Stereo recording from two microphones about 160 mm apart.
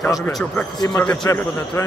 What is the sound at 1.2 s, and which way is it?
Speech, 20° left (ahead or behind).